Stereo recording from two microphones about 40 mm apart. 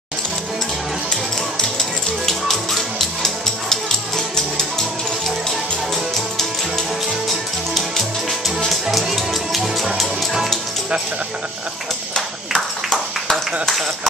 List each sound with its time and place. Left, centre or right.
1.1 s music: centre
2.2 s music: centre
7.7 s music: centre
12.5 s a sound: centre